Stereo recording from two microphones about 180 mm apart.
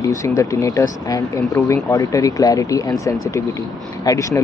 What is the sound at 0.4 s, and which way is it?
Speech, 20° left (ahead or behind).